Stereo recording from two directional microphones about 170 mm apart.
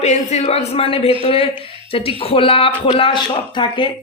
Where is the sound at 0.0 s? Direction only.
40° left (ahead or behind).